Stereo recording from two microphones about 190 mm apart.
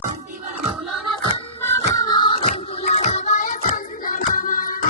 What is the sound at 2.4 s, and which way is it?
Music, 35° left (ahead or behind).